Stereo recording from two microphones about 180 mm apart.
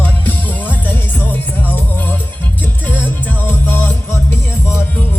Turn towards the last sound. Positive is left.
turn(degrees=10)  # may be behind; listen again after turning